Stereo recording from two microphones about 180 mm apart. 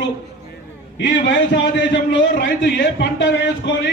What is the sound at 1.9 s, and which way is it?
A man's voice, 75° left (ahead or behind).